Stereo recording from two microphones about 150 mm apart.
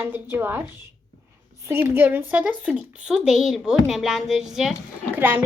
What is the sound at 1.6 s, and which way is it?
A woman's voice, 15° right (ahead or behind).